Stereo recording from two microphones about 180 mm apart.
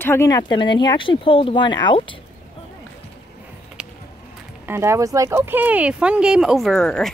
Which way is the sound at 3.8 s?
5° right (ahead or behind).